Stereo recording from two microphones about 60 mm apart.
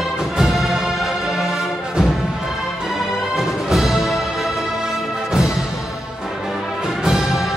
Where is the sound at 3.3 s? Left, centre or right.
Centre.